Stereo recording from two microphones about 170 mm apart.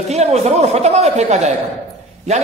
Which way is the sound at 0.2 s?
40° right (ahead or behind).